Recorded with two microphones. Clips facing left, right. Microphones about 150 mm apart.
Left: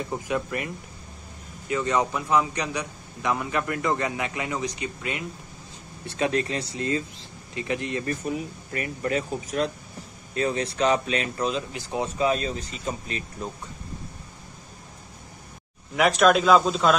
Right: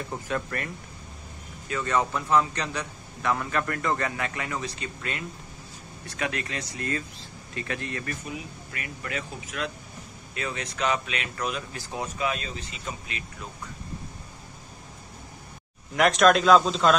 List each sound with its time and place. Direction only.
0.0 s a man's voice: 15° left (ahead or behind)
1.7 s a man's voice: 20° left (ahead or behind)
6.0 s speech: 30° left (ahead or behind)
8.1 s speech: 40° left (ahead or behind)
16.0 s a man's voice: 5° left (ahead or behind)